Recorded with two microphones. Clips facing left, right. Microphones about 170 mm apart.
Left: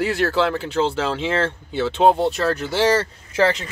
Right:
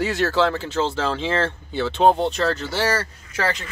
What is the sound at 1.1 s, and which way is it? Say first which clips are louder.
Speech: left 1 dB; 15° left (ahead or behind).